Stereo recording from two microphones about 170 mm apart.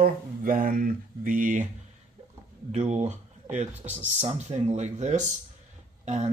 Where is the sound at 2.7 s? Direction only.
40° right (ahead or behind).